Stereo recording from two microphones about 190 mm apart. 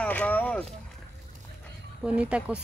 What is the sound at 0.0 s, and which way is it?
Speech, 5° left (ahead or behind).